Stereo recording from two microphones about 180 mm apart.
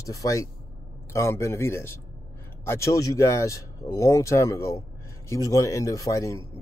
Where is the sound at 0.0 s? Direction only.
20° left (ahead or behind).